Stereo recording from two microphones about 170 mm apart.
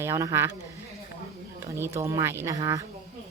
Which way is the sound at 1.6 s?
15° right (ahead or behind).